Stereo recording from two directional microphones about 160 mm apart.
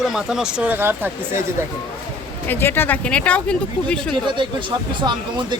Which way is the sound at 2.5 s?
15° left (ahead or behind).